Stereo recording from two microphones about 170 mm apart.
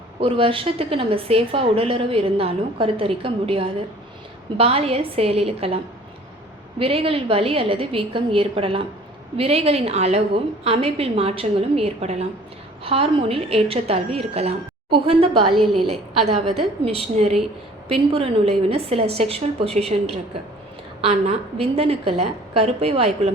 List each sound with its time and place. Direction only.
0.2 s a woman's voice: 30° right (ahead or behind)